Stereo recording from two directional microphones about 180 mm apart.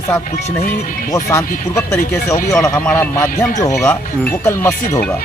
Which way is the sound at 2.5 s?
20° left (ahead or behind).